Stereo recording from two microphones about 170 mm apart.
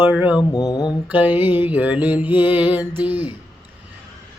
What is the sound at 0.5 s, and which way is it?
Mantra, 25° left (ahead or behind).